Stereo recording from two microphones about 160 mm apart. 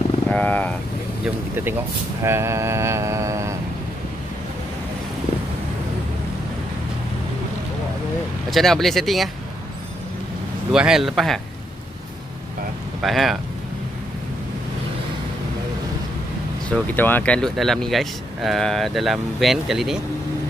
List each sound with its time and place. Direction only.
0.3 s speech: 10° left (ahead or behind)
2.2 s mantra: 15° right (ahead or behind)
8.5 s speech: centre (ahead or behind)
10.7 s speech: 5° right (ahead or behind)
13.0 s speech: centre (ahead or behind)
16.6 s speech: 10° left (ahead or behind)